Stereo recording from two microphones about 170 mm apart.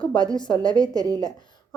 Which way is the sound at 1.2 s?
25° left (ahead or behind).